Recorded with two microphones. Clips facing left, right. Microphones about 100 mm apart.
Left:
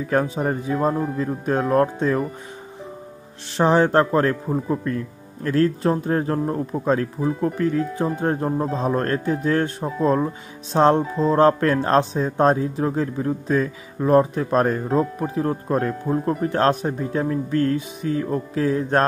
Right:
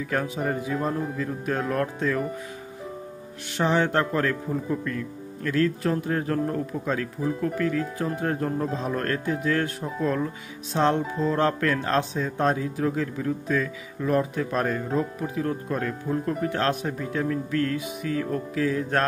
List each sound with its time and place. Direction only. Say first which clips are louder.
0.1 s speech: left 6 dB; 40° left (ahead or behind)
3.5 s speech: left 6 dB; 35° left (ahead or behind)